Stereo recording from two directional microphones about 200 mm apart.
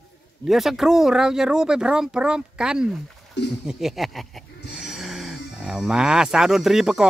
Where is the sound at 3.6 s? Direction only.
5° right (ahead or behind).